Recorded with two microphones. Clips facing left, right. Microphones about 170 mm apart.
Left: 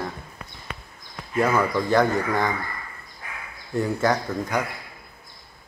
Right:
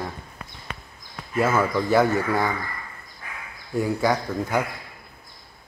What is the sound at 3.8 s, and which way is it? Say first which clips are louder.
Speech: even; centre (ahead or behind).